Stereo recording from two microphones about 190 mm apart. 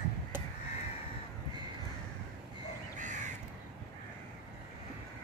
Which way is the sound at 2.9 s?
40° right (ahead or behind).